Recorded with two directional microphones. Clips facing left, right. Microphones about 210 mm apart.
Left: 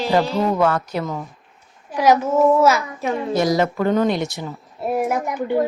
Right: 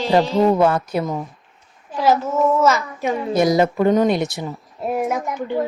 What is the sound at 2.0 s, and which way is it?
A child's voice, 15° left (ahead or behind).